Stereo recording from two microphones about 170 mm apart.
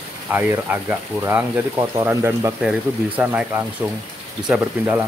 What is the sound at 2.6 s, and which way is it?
Speech, 5° right (ahead or behind).